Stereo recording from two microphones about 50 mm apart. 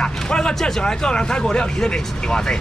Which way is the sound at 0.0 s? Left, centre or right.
Centre.